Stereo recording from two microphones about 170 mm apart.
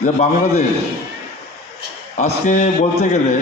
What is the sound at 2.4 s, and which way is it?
Speech, 45° left (ahead or behind).